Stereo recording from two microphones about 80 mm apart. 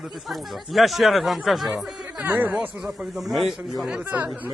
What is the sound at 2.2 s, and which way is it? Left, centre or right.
Speech, right.